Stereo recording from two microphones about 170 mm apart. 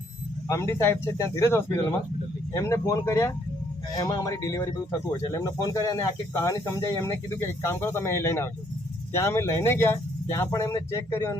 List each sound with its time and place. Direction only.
0.4 s speech: 20° left (ahead or behind)